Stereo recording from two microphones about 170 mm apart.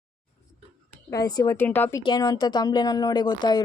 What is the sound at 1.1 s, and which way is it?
Speech, 25° left (ahead or behind).